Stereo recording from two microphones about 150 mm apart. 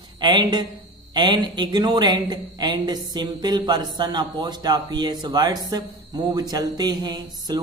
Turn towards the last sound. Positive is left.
turn(degrees=-25)  # may be behind; listen again after turning